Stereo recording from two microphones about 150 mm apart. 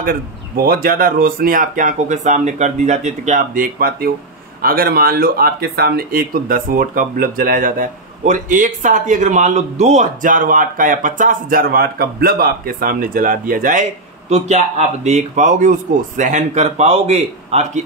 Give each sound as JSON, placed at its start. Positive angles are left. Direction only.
{"t": 0.7, "sound": "speech", "side_deg": -75}
{"t": 14.3, "sound": "speech", "side_deg": -50}